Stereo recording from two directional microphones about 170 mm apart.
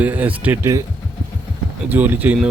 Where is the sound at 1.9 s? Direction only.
10° right (ahead or behind).